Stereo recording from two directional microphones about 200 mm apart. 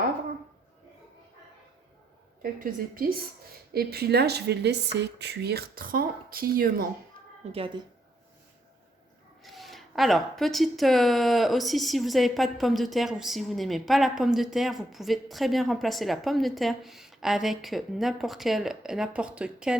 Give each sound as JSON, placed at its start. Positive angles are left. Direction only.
{"t": 2.4, "sound": "speech", "side_deg": -45}
{"t": 7.5, "sound": "speech", "side_deg": -25}
{"t": 9.4, "sound": "speech", "side_deg": 0}